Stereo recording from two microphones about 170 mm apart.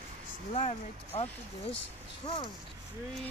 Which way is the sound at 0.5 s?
35° left (ahead or behind).